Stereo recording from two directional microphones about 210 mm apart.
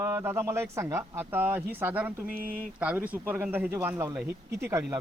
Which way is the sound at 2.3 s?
45° right (ahead or behind).